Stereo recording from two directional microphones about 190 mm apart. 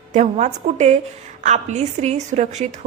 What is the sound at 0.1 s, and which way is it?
A woman's voice, 35° right (ahead or behind).